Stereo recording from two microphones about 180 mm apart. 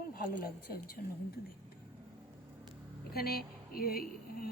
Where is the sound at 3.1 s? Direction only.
60° left (ahead or behind).